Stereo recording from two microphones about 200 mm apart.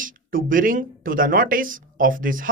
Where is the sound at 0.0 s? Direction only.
45° right (ahead or behind).